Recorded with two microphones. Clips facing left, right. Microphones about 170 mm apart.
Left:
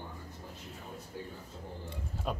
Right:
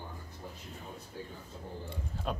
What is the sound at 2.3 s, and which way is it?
Speech, 5° left (ahead or behind).